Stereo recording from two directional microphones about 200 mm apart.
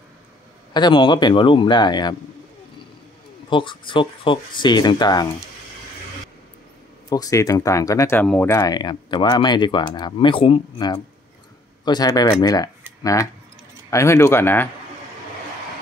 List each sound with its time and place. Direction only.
0.7 s speech: 25° left (ahead or behind)
3.4 s speech: 25° left (ahead or behind)
7.1 s speech: 15° left (ahead or behind)